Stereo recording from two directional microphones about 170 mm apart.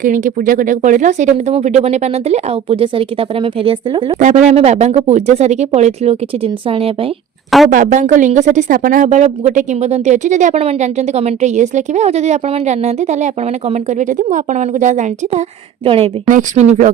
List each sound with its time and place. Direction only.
0.0 s speech: 50° right (ahead or behind); by 4.2 s 30° right (ahead or behind)
4.2 s speech: 45° right (ahead or behind)
7.7 s speech: 50° right (ahead or behind)
16.3 s speech: 45° right (ahead or behind)